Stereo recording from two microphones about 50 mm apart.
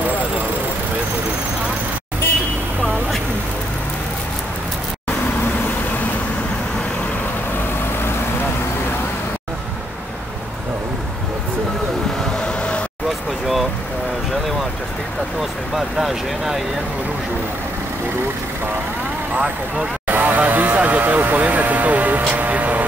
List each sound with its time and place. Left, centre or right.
12.4 s vehicle: left
15.7 s speech: centre
19.3 s speech: right
20.1 s vehicle: right